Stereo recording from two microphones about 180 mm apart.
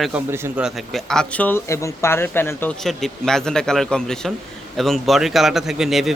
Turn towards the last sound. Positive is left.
turn(degrees=0)  # may be behind; listen again after turning